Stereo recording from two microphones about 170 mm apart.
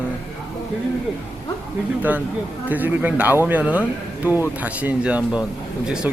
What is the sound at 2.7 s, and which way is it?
Speech, 10° right (ahead or behind).